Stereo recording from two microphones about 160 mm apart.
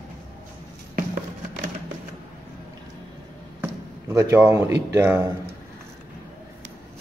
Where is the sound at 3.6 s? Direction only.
15° right (ahead or behind).